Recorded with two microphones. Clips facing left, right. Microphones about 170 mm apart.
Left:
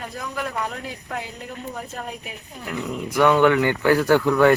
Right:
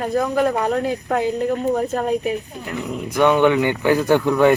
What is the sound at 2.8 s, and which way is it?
Speech, 20° right (ahead or behind).